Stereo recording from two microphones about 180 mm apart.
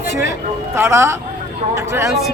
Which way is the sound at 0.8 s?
15° right (ahead or behind).